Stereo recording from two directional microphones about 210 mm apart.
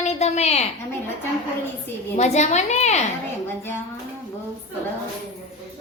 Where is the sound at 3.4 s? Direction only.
10° left (ahead or behind).